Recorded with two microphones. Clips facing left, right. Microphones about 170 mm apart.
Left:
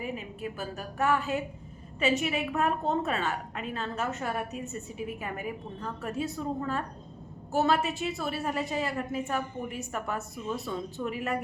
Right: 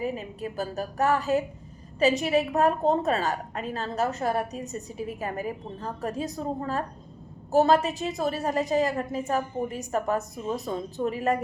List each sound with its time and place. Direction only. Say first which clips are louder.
0.0 s a woman's voice: right 4 dB; 40° right (ahead or behind)